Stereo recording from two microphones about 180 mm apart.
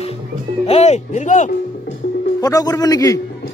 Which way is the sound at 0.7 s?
40° left (ahead or behind).